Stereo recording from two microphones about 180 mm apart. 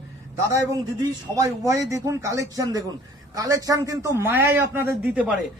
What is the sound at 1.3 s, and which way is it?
A man's voice, 15° right (ahead or behind).